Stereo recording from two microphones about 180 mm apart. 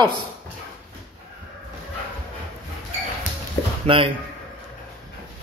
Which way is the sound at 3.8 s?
30° right (ahead or behind).